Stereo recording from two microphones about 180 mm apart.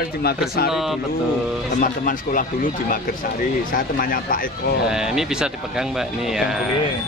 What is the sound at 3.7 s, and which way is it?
Speech, 50° left (ahead or behind).